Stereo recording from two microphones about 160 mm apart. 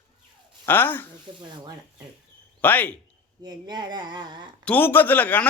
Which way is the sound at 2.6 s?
10° left (ahead or behind).